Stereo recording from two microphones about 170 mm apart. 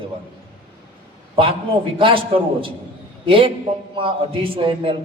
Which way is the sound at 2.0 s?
30° right (ahead or behind).